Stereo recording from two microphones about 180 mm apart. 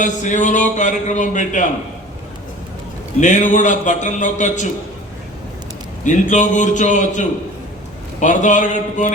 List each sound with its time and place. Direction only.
0.0 s a man's voice: 45° left (ahead or behind)
3.2 s a man's voice: 45° left (ahead or behind)
6.1 s a man's voice: 45° left (ahead or behind)